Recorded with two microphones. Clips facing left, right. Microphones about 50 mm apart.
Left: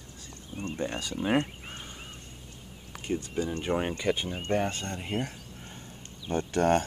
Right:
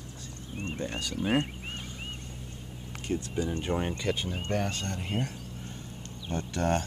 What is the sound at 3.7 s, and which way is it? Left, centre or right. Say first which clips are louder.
Speech: left 5 dB; centre.